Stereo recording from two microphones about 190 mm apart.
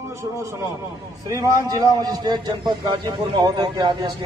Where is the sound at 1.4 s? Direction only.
20° right (ahead or behind).